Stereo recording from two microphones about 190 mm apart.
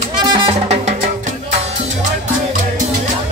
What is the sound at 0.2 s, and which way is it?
Music, 25° right (ahead or behind).